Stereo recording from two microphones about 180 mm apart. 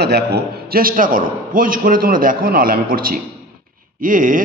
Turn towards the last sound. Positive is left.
turn(degrees=-50)  # may be behind; listen again after turning